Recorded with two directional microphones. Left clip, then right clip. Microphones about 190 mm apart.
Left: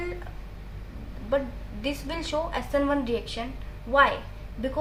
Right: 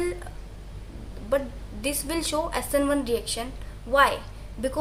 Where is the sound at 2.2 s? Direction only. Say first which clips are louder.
Right 1 dB; 15° right (ahead or behind).